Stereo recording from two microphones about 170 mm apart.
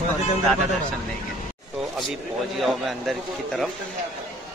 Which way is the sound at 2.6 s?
Centre (ahead or behind).